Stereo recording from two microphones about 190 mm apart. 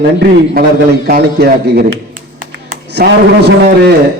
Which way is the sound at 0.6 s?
50° right (ahead or behind).